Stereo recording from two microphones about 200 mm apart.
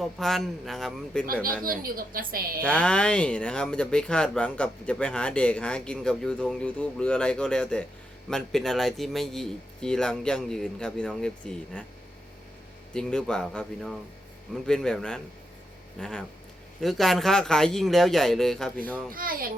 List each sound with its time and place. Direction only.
0.0 s speech: centre (ahead or behind)
1.6 s a woman's voice: 45° right (ahead or behind)
2.6 s speech: 5° left (ahead or behind)
12.9 s speech: 5° left (ahead or behind)
19.1 s a woman's voice: 45° right (ahead or behind)